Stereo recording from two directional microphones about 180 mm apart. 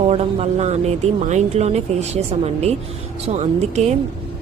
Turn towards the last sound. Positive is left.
turn(degrees=-40)  # may be behind; listen again after turning